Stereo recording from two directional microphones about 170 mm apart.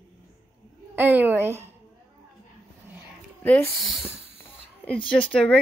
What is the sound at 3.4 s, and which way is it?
Speech, 10° left (ahead or behind).